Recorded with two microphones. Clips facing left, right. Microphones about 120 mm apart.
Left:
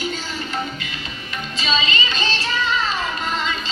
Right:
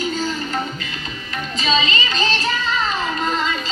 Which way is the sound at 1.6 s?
35° right (ahead or behind).